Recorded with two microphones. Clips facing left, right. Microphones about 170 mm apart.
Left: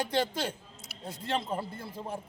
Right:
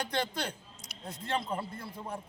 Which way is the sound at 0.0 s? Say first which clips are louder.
Left 4 dB; 25° left (ahead or behind).